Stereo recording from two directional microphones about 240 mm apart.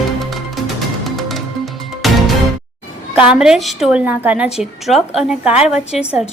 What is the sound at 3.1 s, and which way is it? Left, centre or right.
A woman's voice, centre.